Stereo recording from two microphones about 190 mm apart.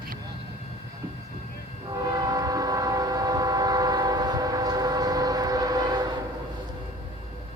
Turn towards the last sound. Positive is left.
turn(degrees=-20)  # may be behind; listen again after turning